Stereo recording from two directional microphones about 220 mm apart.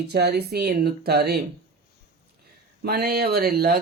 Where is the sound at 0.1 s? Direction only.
45° right (ahead or behind).